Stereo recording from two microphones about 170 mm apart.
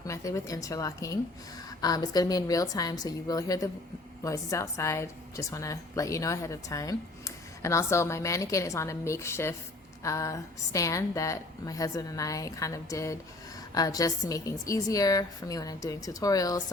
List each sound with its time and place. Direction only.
0.1 s a woman's voice: 20° left (ahead or behind)